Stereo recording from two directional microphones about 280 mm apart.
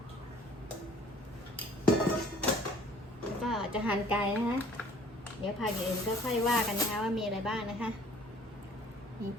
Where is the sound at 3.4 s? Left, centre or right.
Centre.